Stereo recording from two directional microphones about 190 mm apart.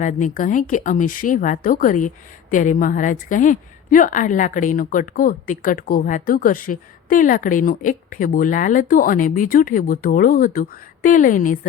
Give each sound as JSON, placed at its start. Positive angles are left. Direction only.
{"t": 0.0, "sound": "speech", "side_deg": 45}